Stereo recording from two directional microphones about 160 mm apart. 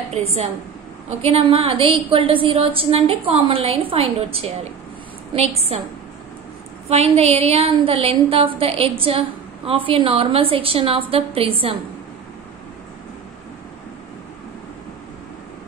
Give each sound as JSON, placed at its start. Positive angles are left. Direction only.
{"t": 0.1, "sound": "a woman's voice", "side_deg": -40}
{"t": 6.9, "sound": "a woman's voice", "side_deg": -40}